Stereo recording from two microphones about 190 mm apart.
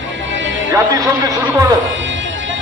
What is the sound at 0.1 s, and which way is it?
Music, 80° right.